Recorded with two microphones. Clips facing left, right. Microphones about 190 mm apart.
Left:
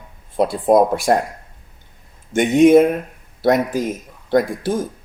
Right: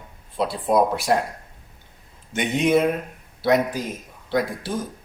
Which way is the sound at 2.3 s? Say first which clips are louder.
Left 9 dB; 50° left (ahead or behind).